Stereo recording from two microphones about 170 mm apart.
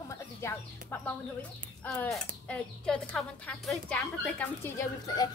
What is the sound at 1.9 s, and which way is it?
A woman's voice, 5° left (ahead or behind).